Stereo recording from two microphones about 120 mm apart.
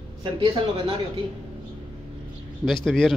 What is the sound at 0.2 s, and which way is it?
Speech, 40° right (ahead or behind).